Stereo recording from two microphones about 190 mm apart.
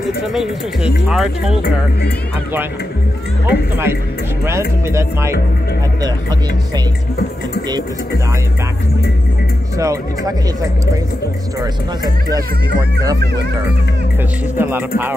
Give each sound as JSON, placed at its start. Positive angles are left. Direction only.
{"t": 0.2, "sound": "speech", "side_deg": 0}
{"t": 3.4, "sound": "speech", "side_deg": -10}
{"t": 9.8, "sound": "speech", "side_deg": -15}
{"t": 14.6, "sound": "speech", "side_deg": -10}